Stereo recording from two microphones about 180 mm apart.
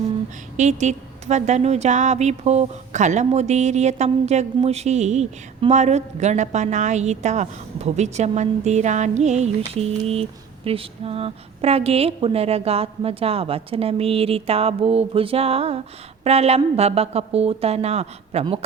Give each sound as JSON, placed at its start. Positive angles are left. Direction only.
{"t": 0.5, "sound": "speech", "side_deg": -40}